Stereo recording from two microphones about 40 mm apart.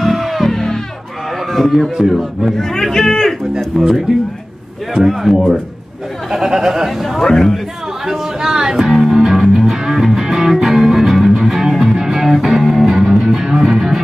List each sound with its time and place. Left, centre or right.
0.0 s music: centre
1.5 s a man's voice: centre
3.5 s speech: centre
5.0 s speech: centre
7.2 s a man's voice: centre
8.1 s music: centre